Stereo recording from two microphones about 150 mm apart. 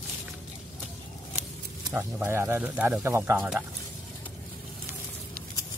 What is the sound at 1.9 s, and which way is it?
Speech, 15° right (ahead or behind).